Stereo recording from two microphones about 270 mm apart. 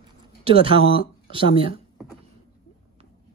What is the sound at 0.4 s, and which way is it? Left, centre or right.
Speech, right.